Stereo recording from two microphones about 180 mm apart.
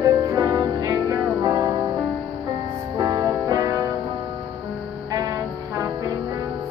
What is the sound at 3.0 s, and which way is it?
Music, 20° right (ahead or behind).